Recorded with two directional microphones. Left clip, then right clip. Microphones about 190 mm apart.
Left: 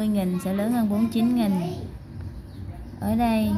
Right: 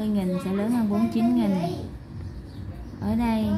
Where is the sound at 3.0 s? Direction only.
30° left (ahead or behind).